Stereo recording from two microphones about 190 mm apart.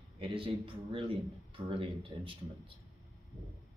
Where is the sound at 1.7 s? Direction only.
30° right (ahead or behind).